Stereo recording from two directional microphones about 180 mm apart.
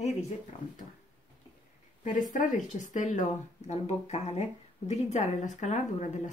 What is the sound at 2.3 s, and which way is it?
Speech, 45° left (ahead or behind).